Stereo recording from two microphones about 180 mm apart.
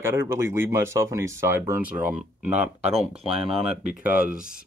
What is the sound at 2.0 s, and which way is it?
Speech, 40° right (ahead or behind).